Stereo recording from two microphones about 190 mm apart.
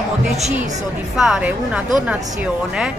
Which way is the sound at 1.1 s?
5° right (ahead or behind).